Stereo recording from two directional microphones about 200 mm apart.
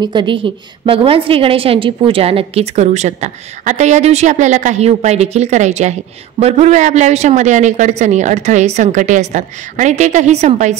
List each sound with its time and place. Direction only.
0.0 s a woman's voice: 25° right (ahead or behind)